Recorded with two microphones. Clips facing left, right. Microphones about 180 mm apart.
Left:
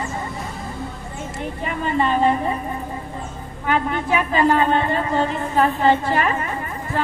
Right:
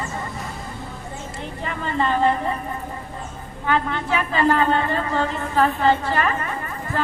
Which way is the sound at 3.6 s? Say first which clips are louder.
Left 1 dB; 15° left (ahead or behind).